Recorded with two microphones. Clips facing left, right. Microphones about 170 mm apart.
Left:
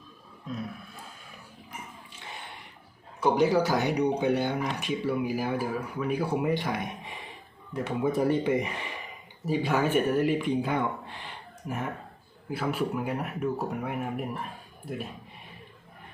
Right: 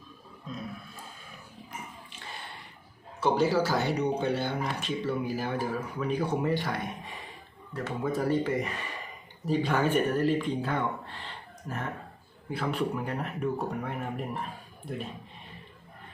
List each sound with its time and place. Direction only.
3.2 s speech: 15° left (ahead or behind)